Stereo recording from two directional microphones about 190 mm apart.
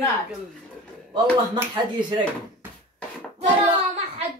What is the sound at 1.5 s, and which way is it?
Speech, 20° right (ahead or behind).